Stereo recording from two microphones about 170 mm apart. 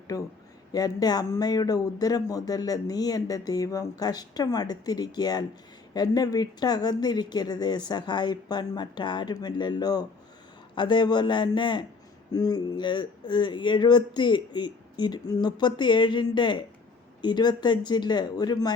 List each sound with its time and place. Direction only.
0.1 s speech: 20° left (ahead or behind)